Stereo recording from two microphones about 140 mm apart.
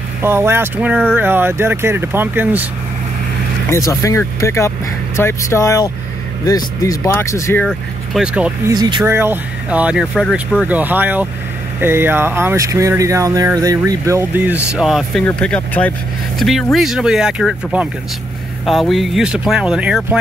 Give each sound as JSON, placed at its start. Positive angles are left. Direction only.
{"t": 0.2, "sound": "speech", "side_deg": -15}
{"t": 3.7, "sound": "speech", "side_deg": 20}
{"t": 7.6, "sound": "speech", "side_deg": -5}
{"t": 8.6, "sound": "speech", "side_deg": -30}
{"t": 9.0, "sound": "speech", "side_deg": -15}
{"t": 16.3, "sound": "speech", "side_deg": 0}